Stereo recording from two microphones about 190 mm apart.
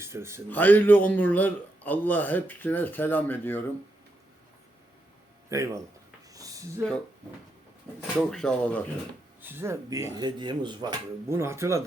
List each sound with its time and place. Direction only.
0.0 s a man's voice: 15° right (ahead or behind)
0.5 s a man's voice: 10° left (ahead or behind)
5.5 s speech: 15° right (ahead or behind)
6.3 s a sound: 20° right (ahead or behind)
8.2 s speech: 5° left (ahead or behind)
9.4 s speech: 10° right (ahead or behind)
10.2 s speech: 25° right (ahead or behind)